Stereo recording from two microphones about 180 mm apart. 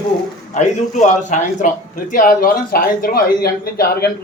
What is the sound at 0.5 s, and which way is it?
A man's voice, 40° left (ahead or behind).